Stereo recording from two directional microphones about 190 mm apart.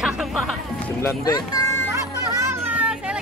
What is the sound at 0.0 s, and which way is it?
Music, centre (ahead or behind).